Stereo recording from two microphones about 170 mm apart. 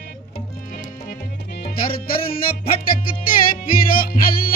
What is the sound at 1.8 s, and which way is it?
Music, 60° left (ahead or behind).